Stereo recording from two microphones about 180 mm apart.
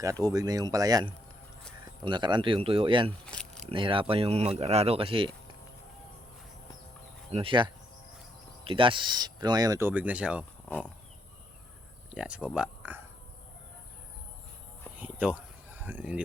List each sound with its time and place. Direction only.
0.0 s speech: 20° right (ahead or behind)
3.2 s keys jangling: 5° left (ahead or behind)
3.7 s speech: 30° right (ahead or behind)
7.3 s speech: 30° right (ahead or behind); by 10.4 s 5° right (ahead or behind)
12.1 s speech: 5° right (ahead or behind)
14.9 s a sound: 10° right (ahead or behind)